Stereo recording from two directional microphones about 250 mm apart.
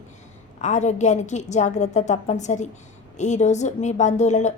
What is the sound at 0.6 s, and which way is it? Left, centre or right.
A woman's voice, left.